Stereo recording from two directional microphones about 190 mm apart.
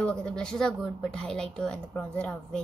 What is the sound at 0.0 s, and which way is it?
A woman's voice, 5° left (ahead or behind).